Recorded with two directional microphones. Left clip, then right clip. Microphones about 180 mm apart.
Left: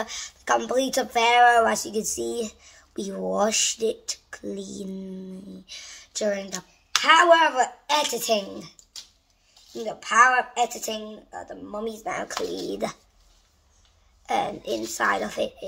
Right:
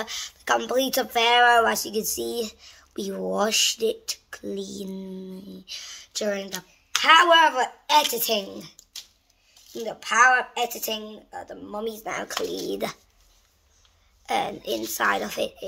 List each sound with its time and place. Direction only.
0.0 s speech: centre (ahead or behind)
9.7 s a sound: centre (ahead or behind)
10.0 s speech: 15° right (ahead or behind)
10.3 s speech: 5° right (ahead or behind)
14.2 s speech: centre (ahead or behind)